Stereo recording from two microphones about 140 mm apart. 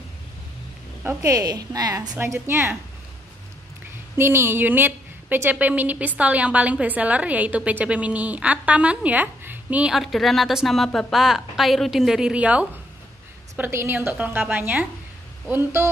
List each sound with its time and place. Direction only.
1.0 s a woman's voice: 20° right (ahead or behind)
4.2 s a woman's voice: 15° right (ahead or behind)